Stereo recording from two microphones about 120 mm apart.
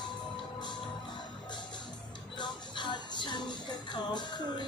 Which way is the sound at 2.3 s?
40° left (ahead or behind).